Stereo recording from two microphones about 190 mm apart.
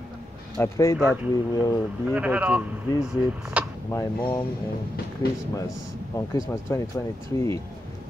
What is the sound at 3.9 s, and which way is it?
Speech, 20° left (ahead or behind).